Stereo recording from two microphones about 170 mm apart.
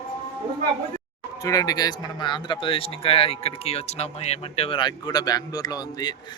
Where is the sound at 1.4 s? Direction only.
20° left (ahead or behind).